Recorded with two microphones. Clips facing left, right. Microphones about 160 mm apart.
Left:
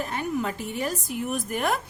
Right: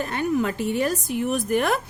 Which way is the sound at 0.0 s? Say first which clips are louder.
Right 5 dB; 70° right (ahead or behind).